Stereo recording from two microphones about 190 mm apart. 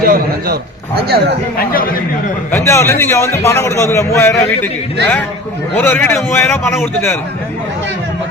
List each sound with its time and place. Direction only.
0.0 s a man's voice: 55° right (ahead or behind)
1.5 s a man's voice: 50° left (ahead or behind)
2.5 s a man's voice: 15° left (ahead or behind)
5.7 s a man's voice: 10° left (ahead or behind)